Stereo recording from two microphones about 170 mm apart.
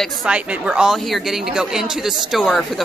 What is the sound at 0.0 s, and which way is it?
Speech, 5° right (ahead or behind).